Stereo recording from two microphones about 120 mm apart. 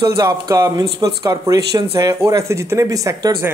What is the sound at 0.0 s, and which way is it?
Speech, 35° right (ahead or behind).